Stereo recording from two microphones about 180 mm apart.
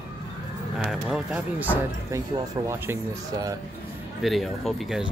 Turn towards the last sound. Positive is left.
turn(degrees=0)  # may be behind; listen again after turning